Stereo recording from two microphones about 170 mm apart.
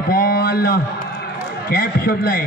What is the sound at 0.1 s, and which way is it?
A man's voice, 60° left (ahead or behind).